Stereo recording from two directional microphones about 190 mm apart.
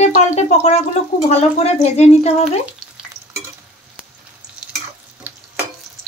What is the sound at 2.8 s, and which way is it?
Stir, centre (ahead or behind).